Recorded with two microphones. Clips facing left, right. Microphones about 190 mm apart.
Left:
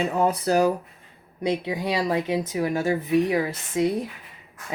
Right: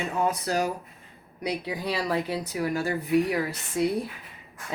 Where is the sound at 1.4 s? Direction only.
25° left (ahead or behind).